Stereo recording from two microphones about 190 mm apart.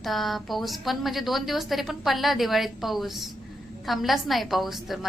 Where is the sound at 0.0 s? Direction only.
Centre (ahead or behind).